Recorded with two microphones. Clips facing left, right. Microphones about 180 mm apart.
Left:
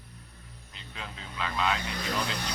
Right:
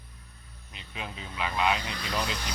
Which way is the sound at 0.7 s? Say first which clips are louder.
Right 3 dB; 15° right (ahead or behind).